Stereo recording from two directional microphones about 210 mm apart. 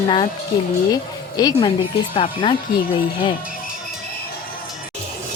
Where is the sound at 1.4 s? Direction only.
20° left (ahead or behind).